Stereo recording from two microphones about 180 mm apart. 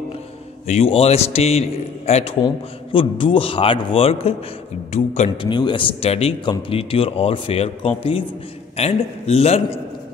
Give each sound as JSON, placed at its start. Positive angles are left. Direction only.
{"t": 0.7, "sound": "speech", "side_deg": 35}
{"t": 5.5, "sound": "speech", "side_deg": 25}